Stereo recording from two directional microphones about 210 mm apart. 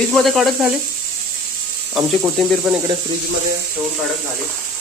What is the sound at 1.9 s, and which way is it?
Speech, 5° right (ahead or behind).